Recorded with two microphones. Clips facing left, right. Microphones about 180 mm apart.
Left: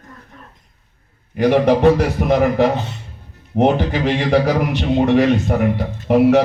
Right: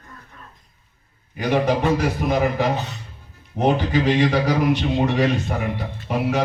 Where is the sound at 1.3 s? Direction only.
70° left (ahead or behind).